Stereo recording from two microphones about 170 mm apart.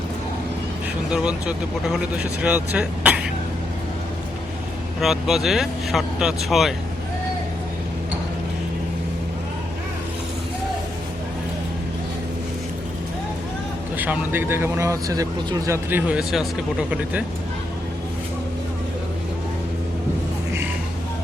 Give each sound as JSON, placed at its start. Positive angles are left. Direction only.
{"t": 1.1, "sound": "speech", "side_deg": -5}
{"t": 4.9, "sound": "speech", "side_deg": 0}
{"t": 13.9, "sound": "speech", "side_deg": -10}